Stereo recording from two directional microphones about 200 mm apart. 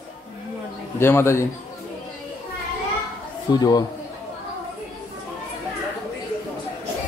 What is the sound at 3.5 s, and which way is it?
Speech, 20° left (ahead or behind).